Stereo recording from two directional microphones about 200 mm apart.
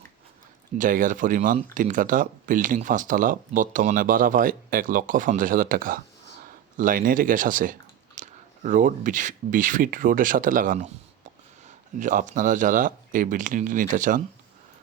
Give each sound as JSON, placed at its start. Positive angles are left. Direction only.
{"t": 0.8, "sound": "speech", "side_deg": -40}